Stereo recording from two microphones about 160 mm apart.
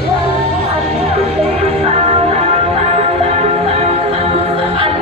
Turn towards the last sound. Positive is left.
turn(degrees=-35)  # may be behind; listen again after turning